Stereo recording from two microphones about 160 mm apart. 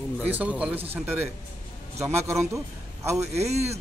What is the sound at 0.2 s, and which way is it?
Speech, 10° right (ahead or behind).